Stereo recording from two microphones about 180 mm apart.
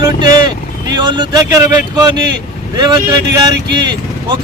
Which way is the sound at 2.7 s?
25° right (ahead or behind).